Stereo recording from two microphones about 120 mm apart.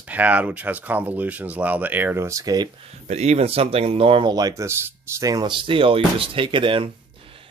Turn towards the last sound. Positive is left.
turn(degrees=-45)  # may be behind; listen again after turning